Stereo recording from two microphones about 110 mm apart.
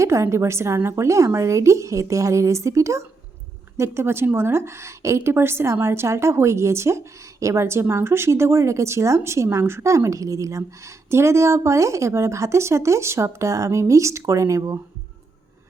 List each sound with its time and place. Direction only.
0.0 s a woman's voice: 25° right (ahead or behind)